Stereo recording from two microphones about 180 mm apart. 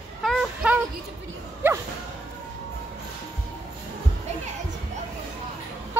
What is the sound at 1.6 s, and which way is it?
Bow-wow, 10° right (ahead or behind).